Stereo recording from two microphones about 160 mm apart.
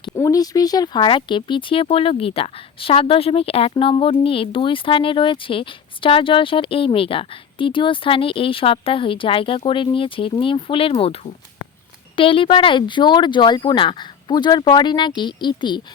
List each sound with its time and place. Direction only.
0.2 s speech: 20° left (ahead or behind)